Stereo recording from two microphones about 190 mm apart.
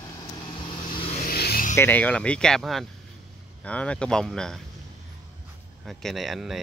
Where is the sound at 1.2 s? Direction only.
55° left (ahead or behind).